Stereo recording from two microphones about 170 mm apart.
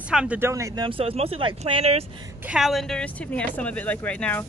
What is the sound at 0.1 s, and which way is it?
Speech, 5° right (ahead or behind).